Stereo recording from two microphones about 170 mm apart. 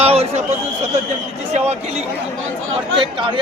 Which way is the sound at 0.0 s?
35° right (ahead or behind).